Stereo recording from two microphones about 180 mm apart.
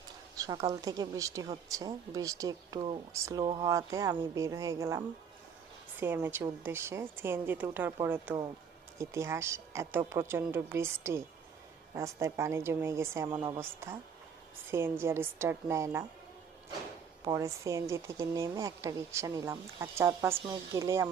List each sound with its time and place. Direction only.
0.3 s a woman's voice: 20° right (ahead or behind)
13.6 s speech: 15° right (ahead or behind)
17.2 s speech: 15° right (ahead or behind)